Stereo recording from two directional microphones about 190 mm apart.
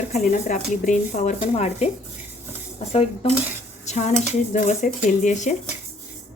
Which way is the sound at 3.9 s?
35° left (ahead or behind).